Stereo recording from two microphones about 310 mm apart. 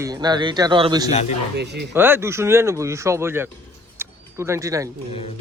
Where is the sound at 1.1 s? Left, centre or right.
Left.